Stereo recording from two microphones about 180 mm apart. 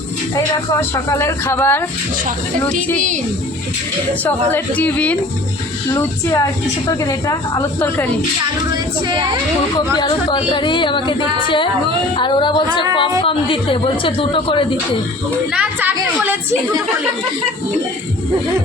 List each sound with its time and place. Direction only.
0.3 s speech: 15° left (ahead or behind)
4.2 s speech: 10° left (ahead or behind)
8.7 s female singing: 25° right (ahead or behind)
9.7 s a woman's voice: 25° left (ahead or behind)
15.5 s a woman's voice: 10° right (ahead or behind)